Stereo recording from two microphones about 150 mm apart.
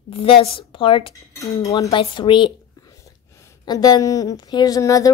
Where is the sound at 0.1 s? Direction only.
40° left (ahead or behind).